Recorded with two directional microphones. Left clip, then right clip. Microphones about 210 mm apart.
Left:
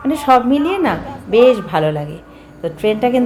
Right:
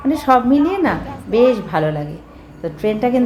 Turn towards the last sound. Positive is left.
turn(degrees=15)  # may be behind; listen again after turning